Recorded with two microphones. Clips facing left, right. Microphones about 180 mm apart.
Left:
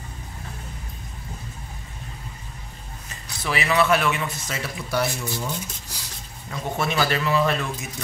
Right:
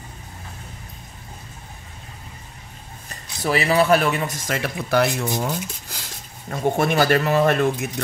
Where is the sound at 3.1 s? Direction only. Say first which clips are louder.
Right 5 dB; 40° right (ahead or behind).